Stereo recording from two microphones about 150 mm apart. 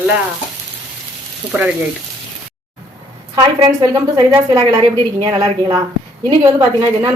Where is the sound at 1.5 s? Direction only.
10° right (ahead or behind).